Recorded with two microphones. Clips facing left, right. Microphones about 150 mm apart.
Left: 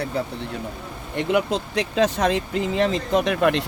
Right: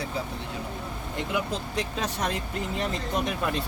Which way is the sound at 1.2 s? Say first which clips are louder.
Left 9 dB; 75° left (ahead or behind).